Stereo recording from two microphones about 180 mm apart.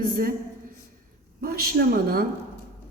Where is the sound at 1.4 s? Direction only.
55° right (ahead or behind).